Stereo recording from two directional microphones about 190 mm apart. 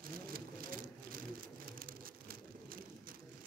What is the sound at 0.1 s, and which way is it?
Vehicle, 50° right (ahead or behind).